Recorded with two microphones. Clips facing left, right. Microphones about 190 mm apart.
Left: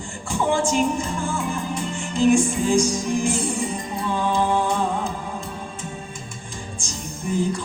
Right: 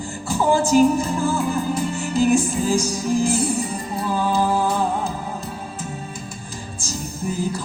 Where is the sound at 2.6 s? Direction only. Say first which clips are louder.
Left 2 dB; 35° right (ahead or behind).